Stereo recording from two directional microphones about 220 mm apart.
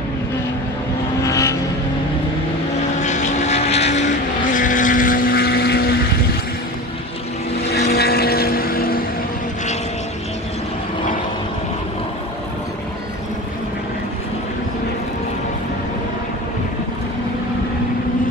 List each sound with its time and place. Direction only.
1.2 s vehicle: 15° left (ahead or behind)
3.0 s vehicle: 35° left (ahead or behind)
7.9 s vehicle: 45° left (ahead or behind)